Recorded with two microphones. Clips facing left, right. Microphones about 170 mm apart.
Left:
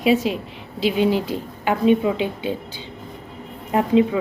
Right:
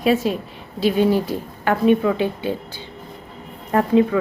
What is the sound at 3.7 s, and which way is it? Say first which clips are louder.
Speech: right 1 dB; 15° left (ahead or behind).